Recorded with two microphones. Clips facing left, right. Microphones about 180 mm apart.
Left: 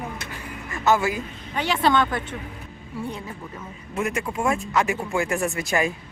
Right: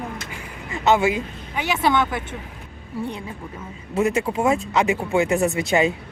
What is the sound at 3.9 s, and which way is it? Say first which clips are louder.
Speech: right 6 dB; 25° right (ahead or behind).